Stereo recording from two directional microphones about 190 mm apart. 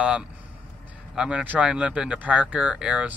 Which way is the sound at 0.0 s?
5° right (ahead or behind).